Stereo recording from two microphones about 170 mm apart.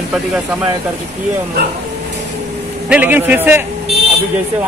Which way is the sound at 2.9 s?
10° right (ahead or behind).